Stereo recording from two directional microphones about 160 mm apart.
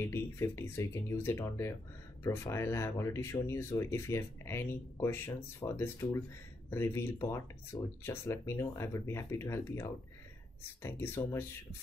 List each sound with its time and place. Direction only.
0.0 s speech: 15° left (ahead or behind)